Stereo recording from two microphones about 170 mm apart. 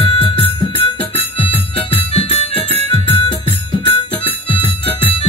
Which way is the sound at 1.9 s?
35° left (ahead or behind).